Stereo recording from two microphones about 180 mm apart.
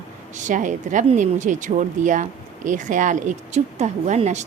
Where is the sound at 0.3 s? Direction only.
45° right (ahead or behind).